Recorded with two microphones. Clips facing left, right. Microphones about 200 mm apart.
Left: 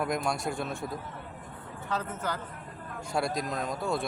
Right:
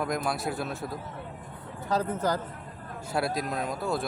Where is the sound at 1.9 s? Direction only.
40° right (ahead or behind).